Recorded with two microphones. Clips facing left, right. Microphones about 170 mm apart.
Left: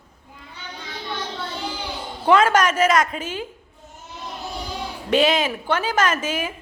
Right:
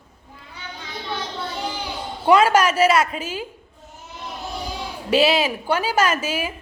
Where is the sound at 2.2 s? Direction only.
10° right (ahead or behind).